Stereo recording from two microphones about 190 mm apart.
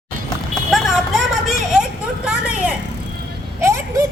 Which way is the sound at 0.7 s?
Centre (ahead or behind).